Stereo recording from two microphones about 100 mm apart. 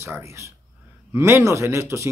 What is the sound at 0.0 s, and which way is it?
Speech, 25° right (ahead or behind).